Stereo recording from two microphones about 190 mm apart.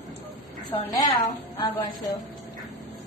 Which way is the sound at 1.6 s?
10° left (ahead or behind).